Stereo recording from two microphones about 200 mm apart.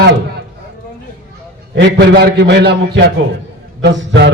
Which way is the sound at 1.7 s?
55° right (ahead or behind).